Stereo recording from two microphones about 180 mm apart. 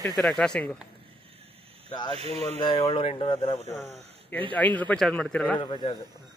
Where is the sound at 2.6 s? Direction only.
30° left (ahead or behind).